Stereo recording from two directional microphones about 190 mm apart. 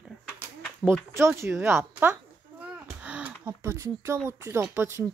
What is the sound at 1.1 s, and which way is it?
Speech, 15° right (ahead or behind).